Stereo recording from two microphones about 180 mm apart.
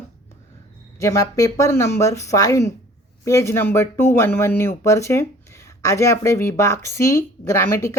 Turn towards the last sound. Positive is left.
turn(degrees=15)  # may be behind; listen again after turning